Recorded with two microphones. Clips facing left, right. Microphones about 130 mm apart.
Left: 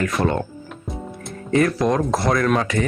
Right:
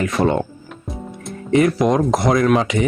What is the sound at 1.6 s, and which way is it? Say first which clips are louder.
Speech: right 3 dB; 15° right (ahead or behind).